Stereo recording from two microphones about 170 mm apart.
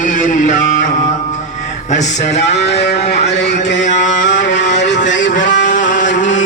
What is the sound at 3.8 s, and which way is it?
Chant, 45° left (ahead or behind).